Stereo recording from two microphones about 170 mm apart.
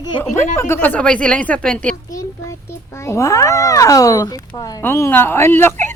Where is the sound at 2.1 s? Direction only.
20° left (ahead or behind).